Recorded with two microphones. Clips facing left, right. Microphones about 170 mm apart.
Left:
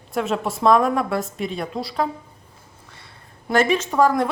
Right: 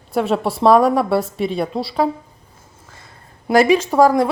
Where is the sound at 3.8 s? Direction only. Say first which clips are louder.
Right 5 dB; 35° right (ahead or behind).